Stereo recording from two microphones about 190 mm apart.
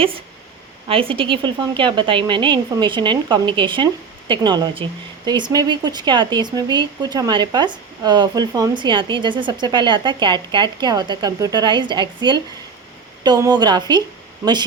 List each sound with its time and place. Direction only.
0.9 s speech: 30° right (ahead or behind)